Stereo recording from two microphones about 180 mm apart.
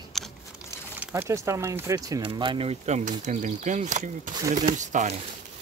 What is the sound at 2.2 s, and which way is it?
Speech, 30° right (ahead or behind).